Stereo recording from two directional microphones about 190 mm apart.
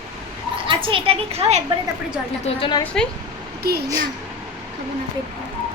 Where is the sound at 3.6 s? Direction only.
55° right (ahead or behind).